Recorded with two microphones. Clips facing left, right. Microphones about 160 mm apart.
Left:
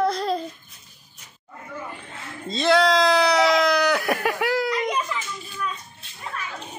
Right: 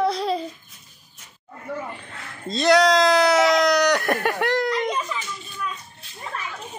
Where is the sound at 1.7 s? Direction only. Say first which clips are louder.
Right 6 dB; 75° right (ahead or behind).